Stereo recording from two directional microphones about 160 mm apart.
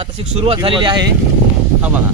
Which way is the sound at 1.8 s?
10° right (ahead or behind).